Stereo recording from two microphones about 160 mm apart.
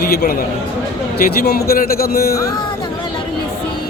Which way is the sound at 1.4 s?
70° left (ahead or behind).